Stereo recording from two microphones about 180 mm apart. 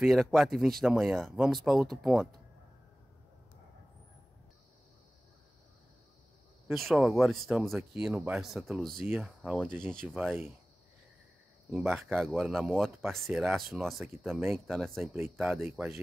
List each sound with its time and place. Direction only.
0.0 s speech: centre (ahead or behind)
6.7 s speech: centre (ahead or behind)
11.7 s speech: 10° right (ahead or behind)